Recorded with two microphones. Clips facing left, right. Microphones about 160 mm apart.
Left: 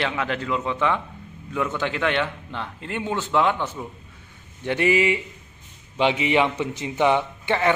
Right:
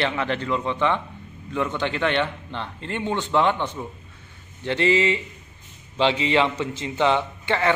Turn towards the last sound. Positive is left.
turn(degrees=15)  # may be behind; listen again after turning